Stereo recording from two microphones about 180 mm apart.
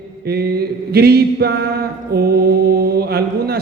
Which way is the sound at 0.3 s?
60° right (ahead or behind).